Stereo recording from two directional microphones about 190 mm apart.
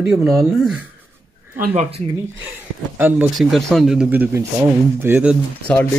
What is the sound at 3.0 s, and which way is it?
Speech, 10° right (ahead or behind).